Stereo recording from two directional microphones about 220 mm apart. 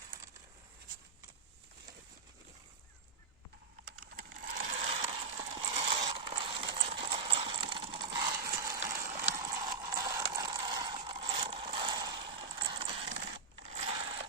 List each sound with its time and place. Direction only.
4.4 s ratchet: 40° right (ahead or behind); by 8.8 s 15° right (ahead or behind)
9.0 s clip-clop: 35° right (ahead or behind)
9.3 s clip-clop: 15° right (ahead or behind)
10.3 s mechanisms: 20° right (ahead or behind)
13.7 s a sound: 25° right (ahead or behind)